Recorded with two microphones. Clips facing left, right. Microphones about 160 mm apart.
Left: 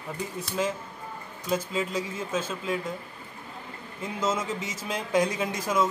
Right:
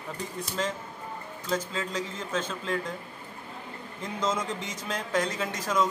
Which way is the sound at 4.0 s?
5° left (ahead or behind).